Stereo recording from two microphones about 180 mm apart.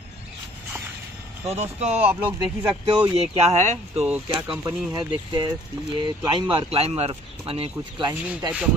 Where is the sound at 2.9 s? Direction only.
35° right (ahead or behind).